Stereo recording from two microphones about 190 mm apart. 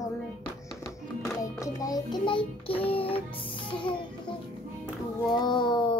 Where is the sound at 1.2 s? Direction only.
15° left (ahead or behind).